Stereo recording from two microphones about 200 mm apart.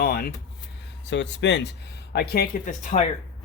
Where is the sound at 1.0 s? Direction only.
60° left (ahead or behind); by 3.1 s 35° left (ahead or behind).